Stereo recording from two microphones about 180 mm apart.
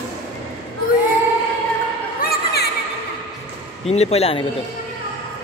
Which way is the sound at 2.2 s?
55° left (ahead or behind).